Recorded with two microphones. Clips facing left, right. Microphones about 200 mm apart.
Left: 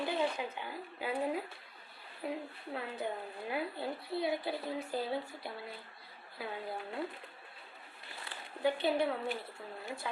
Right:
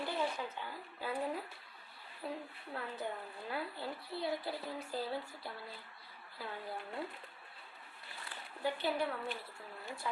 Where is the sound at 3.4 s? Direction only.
15° left (ahead or behind).